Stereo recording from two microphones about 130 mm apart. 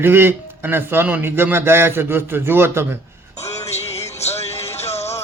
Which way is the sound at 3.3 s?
55° left (ahead or behind).